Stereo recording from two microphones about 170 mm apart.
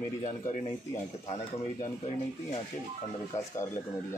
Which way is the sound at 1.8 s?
40° left (ahead or behind).